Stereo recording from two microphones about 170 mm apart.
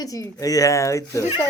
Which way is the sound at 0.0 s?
20° left (ahead or behind).